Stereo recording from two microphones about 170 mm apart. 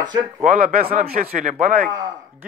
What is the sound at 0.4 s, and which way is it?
A man's voice, 50° right (ahead or behind).